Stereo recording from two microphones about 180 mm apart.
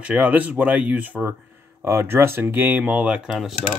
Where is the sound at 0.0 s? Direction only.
5° right (ahead or behind).